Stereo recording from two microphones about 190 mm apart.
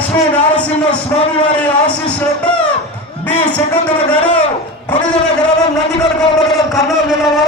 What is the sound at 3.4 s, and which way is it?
Speech, 5° left (ahead or behind).